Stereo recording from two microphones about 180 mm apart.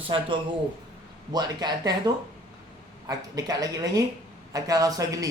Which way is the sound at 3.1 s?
20° right (ahead or behind).